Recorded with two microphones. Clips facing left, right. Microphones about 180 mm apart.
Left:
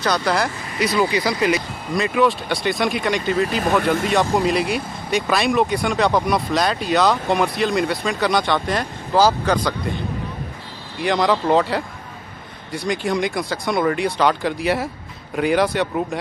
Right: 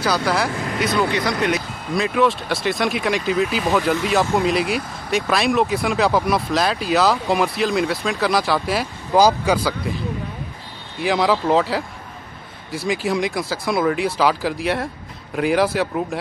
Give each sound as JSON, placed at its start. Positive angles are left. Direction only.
{"t": 0.0, "sound": "speech", "side_deg": -5}
{"t": 0.5, "sound": "vehicle", "side_deg": -60}
{"t": 0.7, "sound": "speech", "side_deg": 0}